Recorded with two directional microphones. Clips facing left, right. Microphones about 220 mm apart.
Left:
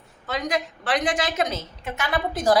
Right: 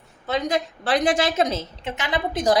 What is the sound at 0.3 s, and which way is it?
A woman's voice, 25° right (ahead or behind).